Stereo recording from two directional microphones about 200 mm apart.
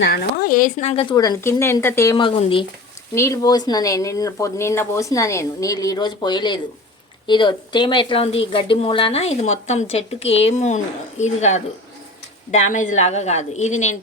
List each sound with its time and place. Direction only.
0.0 s speech: 50° left (ahead or behind)
1.1 s speech: 20° left (ahead or behind)
2.1 s a woman's voice: 25° left (ahead or behind)
3.2 s a woman's voice: 15° left (ahead or behind); by 13.9 s 35° left (ahead or behind)